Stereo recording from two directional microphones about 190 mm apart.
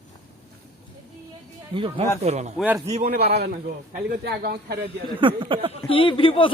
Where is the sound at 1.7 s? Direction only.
25° right (ahead or behind).